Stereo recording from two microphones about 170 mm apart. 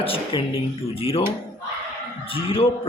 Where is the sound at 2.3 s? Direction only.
30° left (ahead or behind).